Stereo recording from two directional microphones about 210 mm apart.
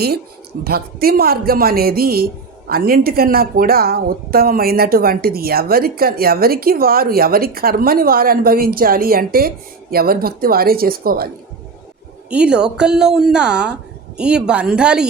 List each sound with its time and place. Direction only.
0.6 s a man's voice: 45° right (ahead or behind)
12.3 s a woman's voice: 5° right (ahead or behind)